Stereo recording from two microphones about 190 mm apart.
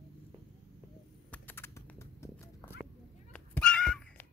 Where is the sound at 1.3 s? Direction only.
10° left (ahead or behind).